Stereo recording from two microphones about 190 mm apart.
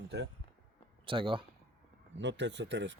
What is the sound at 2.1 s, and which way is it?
Speech, 70° right (ahead or behind).